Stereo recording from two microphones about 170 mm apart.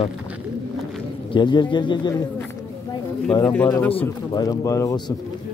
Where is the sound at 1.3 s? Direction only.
25° left (ahead or behind).